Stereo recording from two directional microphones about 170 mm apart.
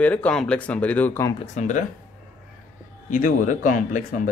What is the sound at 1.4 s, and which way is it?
Speech, 40° left (ahead or behind).